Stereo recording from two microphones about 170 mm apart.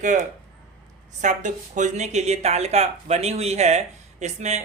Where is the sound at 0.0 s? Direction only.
50° right (ahead or behind).